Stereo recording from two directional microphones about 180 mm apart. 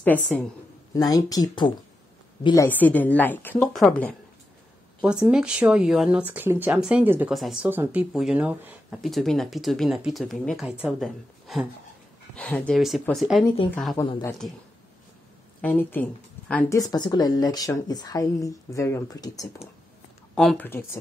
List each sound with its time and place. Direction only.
0.0 s a woman's voice: 10° left (ahead or behind)
0.9 s a woman's voice: 20° left (ahead or behind)
5.0 s speech: 5° right (ahead or behind)
15.6 s speech: 10° left (ahead or behind)
20.3 s a woman's voice: 5° left (ahead or behind)